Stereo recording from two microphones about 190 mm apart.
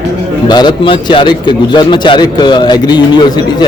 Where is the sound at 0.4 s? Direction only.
20° left (ahead or behind).